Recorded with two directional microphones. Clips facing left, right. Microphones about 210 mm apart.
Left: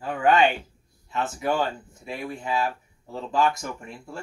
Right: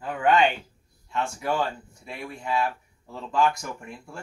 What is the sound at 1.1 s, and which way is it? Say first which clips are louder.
Speech: left 2 dB; 5° left (ahead or behind).